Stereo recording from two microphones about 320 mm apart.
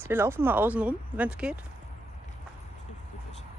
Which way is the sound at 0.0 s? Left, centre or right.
Centre.